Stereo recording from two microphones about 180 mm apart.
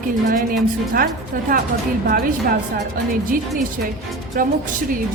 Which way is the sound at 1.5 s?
50° right (ahead or behind).